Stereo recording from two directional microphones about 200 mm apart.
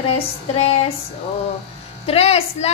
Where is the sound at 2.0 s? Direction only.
30° left (ahead or behind).